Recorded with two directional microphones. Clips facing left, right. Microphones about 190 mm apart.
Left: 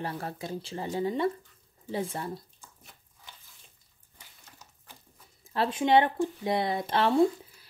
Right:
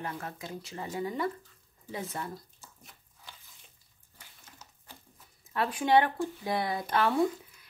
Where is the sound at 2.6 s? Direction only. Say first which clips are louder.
Even; centre (ahead or behind).